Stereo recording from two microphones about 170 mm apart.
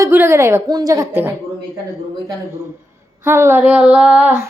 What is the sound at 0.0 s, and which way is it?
Female singing, 15° right (ahead or behind).